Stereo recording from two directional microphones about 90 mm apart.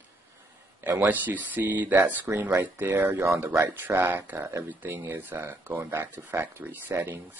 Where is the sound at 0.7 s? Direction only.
20° right (ahead or behind).